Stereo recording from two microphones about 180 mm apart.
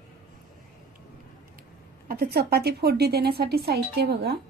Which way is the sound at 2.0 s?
60° right (ahead or behind).